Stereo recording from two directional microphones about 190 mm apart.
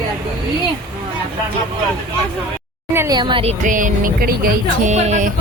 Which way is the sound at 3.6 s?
45° right (ahead or behind).